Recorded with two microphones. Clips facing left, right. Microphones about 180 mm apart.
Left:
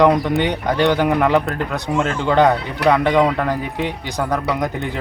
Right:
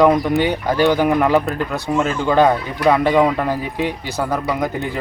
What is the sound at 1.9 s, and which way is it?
Speech, 5° right (ahead or behind).